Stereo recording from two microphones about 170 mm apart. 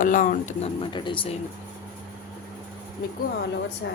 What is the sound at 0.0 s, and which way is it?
Speech, 50° left (ahead or behind).